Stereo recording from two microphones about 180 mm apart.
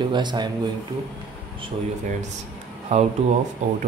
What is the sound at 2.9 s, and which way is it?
Speech, 35° right (ahead or behind).